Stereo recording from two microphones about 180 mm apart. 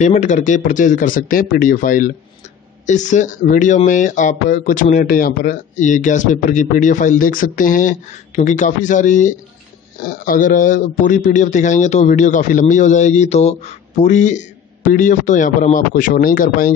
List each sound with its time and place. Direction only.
0.0 s a man's voice: 40° left (ahead or behind)